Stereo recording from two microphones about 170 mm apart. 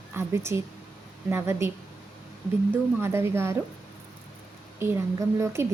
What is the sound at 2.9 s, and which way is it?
Speech, 15° right (ahead or behind).